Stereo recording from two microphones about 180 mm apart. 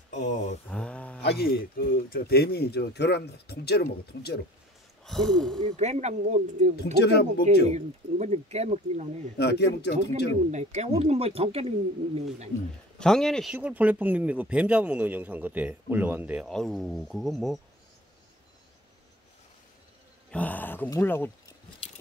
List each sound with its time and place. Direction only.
0.1 s a sound: 40° left (ahead or behind)
0.7 s a sound: 5° left (ahead or behind)
1.2 s speech: 60° left (ahead or behind)
5.0 s gasp: centre (ahead or behind)
5.8 s speech: 40° right (ahead or behind)
6.8 s speech: 65° left (ahead or behind)
7.7 s speech: 35° right (ahead or behind)
9.4 s speech: 70° left (ahead or behind)
10.5 s speech: 40° right (ahead or behind)
13.0 s speech: 5° left (ahead or behind)
20.2 s speech: 10° left (ahead or behind)